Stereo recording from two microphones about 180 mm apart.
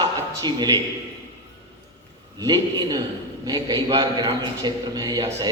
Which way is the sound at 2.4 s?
20° right (ahead or behind).